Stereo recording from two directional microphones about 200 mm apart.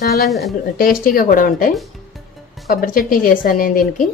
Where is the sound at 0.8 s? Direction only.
45° left (ahead or behind).